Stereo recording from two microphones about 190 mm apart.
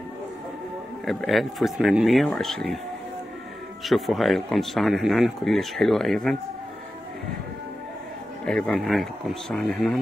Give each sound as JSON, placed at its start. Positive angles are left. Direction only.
{"t": 1.0, "sound": "speech", "side_deg": 0}
{"t": 3.8, "sound": "speech", "side_deg": 0}
{"t": 8.5, "sound": "speech", "side_deg": 5}